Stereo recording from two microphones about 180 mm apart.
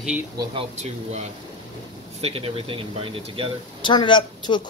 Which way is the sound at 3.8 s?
25° left (ahead or behind).